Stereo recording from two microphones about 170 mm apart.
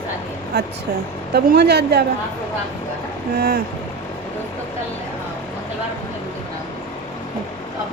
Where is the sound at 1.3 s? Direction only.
65° right (ahead or behind).